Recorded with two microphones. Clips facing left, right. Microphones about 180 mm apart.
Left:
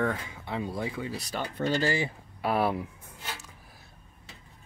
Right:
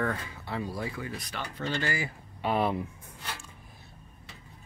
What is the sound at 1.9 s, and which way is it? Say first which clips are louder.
Speech: left 4 dB; 25° left (ahead or behind).